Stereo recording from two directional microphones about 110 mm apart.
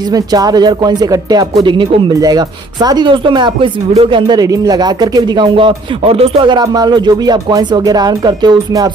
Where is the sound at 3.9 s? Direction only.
60° right (ahead or behind).